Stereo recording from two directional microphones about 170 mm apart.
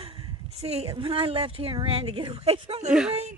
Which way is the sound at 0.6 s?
35° right (ahead or behind).